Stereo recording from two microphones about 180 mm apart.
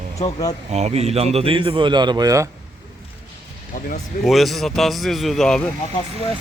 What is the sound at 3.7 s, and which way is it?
Speech, 50° left (ahead or behind).